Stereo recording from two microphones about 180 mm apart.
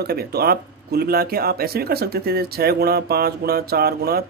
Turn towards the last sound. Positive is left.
turn(degrees=-60)  # may be behind; listen again after turning